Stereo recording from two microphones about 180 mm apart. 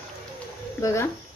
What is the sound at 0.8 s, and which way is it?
Speech, 15° left (ahead or behind).